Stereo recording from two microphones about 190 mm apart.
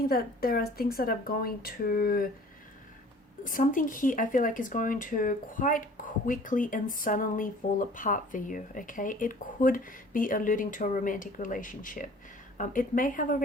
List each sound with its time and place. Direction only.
0.1 s speech: 50° left (ahead or behind)
3.4 s speech: 45° left (ahead or behind)